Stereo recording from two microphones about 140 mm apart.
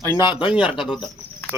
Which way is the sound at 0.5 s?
10° right (ahead or behind).